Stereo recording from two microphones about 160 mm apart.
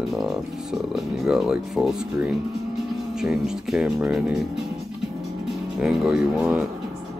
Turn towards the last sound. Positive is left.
turn(degrees=-5)  # may be behind; listen again after turning